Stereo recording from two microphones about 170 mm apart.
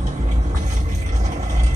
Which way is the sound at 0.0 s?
45° right (ahead or behind).